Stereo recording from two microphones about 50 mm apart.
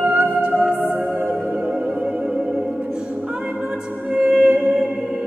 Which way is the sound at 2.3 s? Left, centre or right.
Centre.